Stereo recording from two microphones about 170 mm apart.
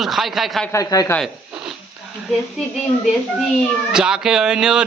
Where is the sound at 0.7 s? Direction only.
20° left (ahead or behind).